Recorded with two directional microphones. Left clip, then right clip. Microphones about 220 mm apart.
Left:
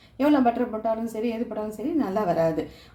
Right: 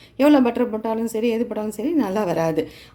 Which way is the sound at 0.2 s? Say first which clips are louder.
Right 5 dB; 45° right (ahead or behind).